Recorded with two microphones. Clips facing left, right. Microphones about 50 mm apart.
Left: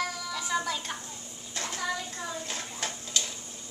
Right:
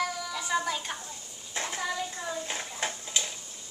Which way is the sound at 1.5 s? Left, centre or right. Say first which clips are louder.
Right 1 dB; centre.